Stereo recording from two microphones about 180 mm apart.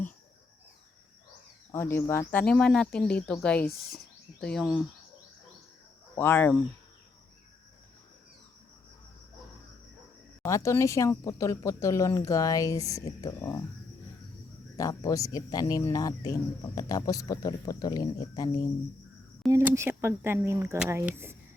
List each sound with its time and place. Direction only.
1.7 s speech: 15° left (ahead or behind)
6.1 s speech: 10° left (ahead or behind)
10.4 s speech: 15° left (ahead or behind)
14.8 s speech: 20° left (ahead or behind)
19.5 s speech: 15° right (ahead or behind)